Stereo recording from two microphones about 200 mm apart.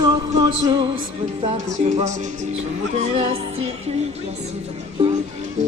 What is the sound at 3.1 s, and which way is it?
Music, 30° right (ahead or behind).